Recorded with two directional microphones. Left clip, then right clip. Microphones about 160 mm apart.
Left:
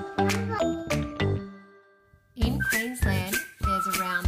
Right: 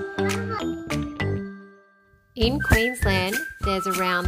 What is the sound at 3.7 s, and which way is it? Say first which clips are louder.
Music: right 3 dB; 65° right (ahead or behind).